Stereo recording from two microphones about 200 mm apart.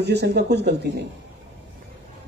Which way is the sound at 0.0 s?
55° right (ahead or behind).